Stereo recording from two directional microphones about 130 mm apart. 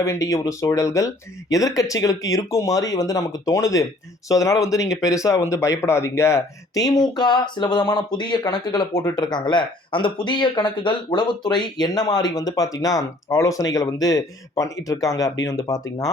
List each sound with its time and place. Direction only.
0.0 s speech: 20° left (ahead or behind)